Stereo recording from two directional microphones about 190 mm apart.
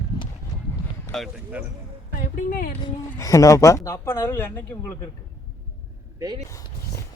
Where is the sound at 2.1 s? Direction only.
45° left (ahead or behind).